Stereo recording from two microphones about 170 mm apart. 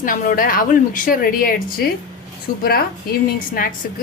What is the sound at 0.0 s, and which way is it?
Speech, 55° left (ahead or behind).